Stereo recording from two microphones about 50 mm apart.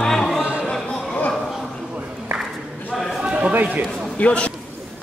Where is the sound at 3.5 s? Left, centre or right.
Right.